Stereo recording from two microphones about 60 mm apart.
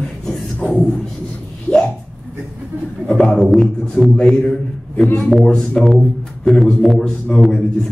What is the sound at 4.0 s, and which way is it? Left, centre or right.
Speech, left.